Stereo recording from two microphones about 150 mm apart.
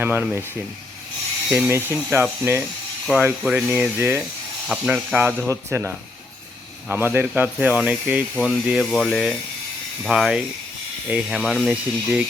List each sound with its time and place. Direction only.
0.0 s speech: 15° right (ahead or behind)
1.5 s speech: 15° right (ahead or behind)